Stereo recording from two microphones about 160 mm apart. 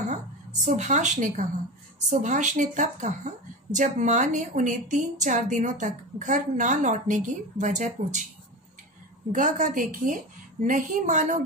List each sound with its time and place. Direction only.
0.7 s a woman's voice: 50° right (ahead or behind)
9.3 s a woman's voice: 55° right (ahead or behind)